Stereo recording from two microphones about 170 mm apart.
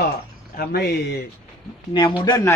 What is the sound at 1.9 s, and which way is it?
Speech, 25° left (ahead or behind).